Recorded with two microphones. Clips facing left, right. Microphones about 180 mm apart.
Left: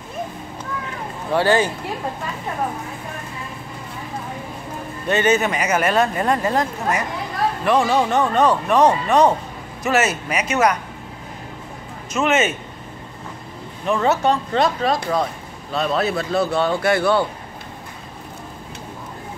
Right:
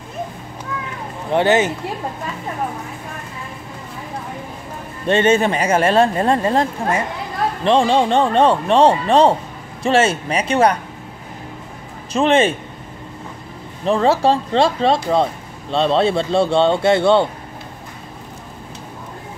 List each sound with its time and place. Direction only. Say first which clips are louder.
1.3 s speech: right 2 dB; 20° right (ahead or behind)
5.0 s speech: right 3 dB; 30° right (ahead or behind)
12.1 s speech: right 4 dB; 30° right (ahead or behind)
13.8 s speech: right 3 dB; 30° right (ahead or behind)